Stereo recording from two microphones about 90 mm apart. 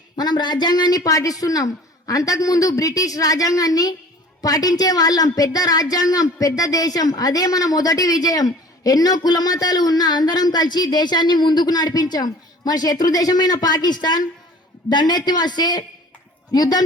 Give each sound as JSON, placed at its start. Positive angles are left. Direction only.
{"t": 0.2, "sound": "a woman's voice", "side_deg": 55}